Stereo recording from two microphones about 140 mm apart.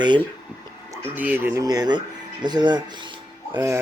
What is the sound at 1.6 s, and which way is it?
Speech, 30° right (ahead or behind).